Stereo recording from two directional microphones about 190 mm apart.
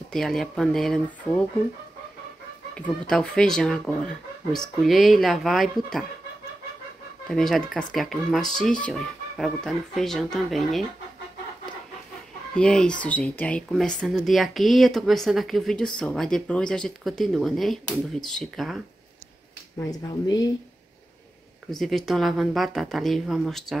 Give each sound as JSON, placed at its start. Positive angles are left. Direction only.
{"t": 0.1, "sound": "speech", "side_deg": 0}
{"t": 2.7, "sound": "speech", "side_deg": 5}
{"t": 7.2, "sound": "speech", "side_deg": 0}
{"t": 12.5, "sound": "speech", "side_deg": 5}
{"t": 19.8, "sound": "speech", "side_deg": 20}
{"t": 21.6, "sound": "speech", "side_deg": 0}